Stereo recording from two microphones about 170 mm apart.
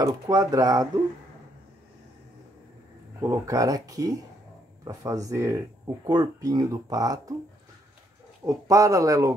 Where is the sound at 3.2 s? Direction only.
20° right (ahead or behind).